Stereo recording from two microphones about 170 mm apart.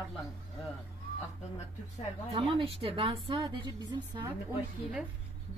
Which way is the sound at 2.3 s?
30° right (ahead or behind).